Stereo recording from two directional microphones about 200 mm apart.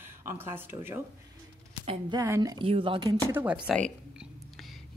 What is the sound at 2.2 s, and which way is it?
Speech, 15° right (ahead or behind).